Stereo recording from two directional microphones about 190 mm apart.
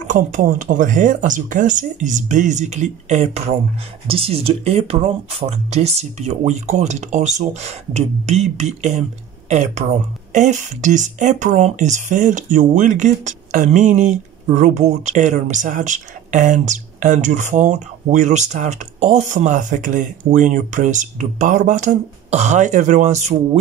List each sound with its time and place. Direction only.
0.0 s speech: 40° right (ahead or behind)